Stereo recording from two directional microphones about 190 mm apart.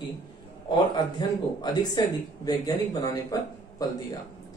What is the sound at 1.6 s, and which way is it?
A man's voice, 20° left (ahead or behind).